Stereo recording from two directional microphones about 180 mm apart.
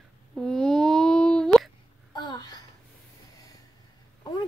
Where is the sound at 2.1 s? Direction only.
25° left (ahead or behind).